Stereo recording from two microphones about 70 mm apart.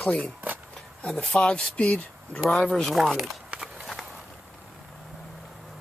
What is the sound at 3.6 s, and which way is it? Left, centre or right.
Walk, centre.